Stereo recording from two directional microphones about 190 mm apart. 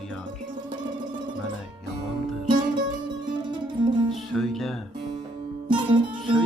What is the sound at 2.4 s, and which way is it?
Music, 25° right (ahead or behind).